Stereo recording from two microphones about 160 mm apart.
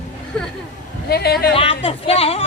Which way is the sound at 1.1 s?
80° left.